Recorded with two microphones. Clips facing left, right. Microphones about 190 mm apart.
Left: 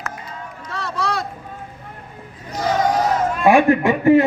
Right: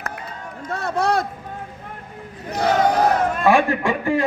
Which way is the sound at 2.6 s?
65° right (ahead or behind).